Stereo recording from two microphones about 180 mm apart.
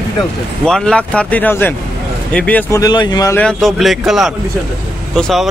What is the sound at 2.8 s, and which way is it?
Speech, 25° left (ahead or behind).